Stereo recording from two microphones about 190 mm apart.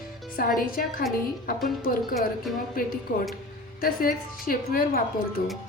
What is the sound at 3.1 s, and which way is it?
A woman's voice, 45° left (ahead or behind).